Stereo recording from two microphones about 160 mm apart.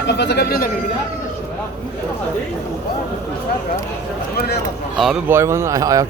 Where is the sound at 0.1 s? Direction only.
90° left.